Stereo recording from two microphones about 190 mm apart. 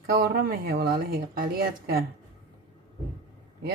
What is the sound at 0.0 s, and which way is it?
Speech, 55° right (ahead or behind).